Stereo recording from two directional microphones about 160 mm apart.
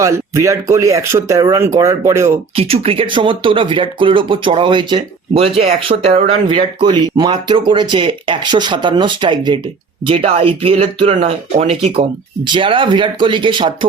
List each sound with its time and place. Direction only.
0.0 s speech: 20° right (ahead or behind)
2.6 s speech: 35° right (ahead or behind)